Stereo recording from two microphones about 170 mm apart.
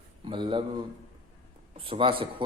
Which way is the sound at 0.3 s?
30° right (ahead or behind).